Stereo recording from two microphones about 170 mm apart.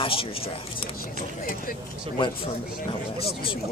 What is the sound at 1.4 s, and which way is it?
Speech, 55° left (ahead or behind).